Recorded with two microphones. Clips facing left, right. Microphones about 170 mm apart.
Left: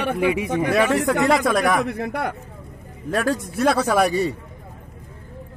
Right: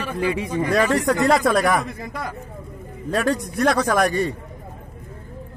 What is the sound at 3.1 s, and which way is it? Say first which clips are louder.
A man's voice: right 1 dB; centre (ahead or behind).